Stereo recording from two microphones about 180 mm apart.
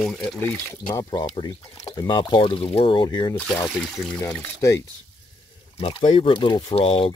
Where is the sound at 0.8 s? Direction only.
25° left (ahead or behind).